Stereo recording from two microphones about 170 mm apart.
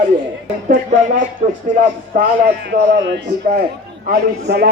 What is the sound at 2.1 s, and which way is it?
A man's voice, 75° right (ahead or behind).